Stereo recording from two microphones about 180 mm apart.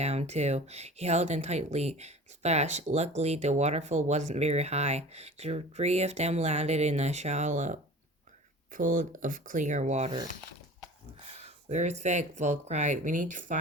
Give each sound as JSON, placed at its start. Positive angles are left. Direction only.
{"t": 0.0, "sound": "speech", "side_deg": -35}
{"t": 11.3, "sound": "speech", "side_deg": -40}